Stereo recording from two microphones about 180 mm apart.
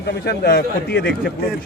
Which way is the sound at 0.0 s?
60° left (ahead or behind).